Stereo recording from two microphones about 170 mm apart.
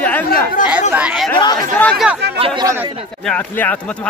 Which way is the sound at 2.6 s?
15° right (ahead or behind).